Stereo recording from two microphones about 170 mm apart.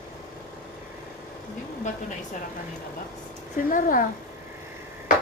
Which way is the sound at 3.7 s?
55° left (ahead or behind).